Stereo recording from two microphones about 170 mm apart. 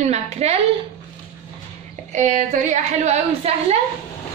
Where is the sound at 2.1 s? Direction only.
45° right (ahead or behind).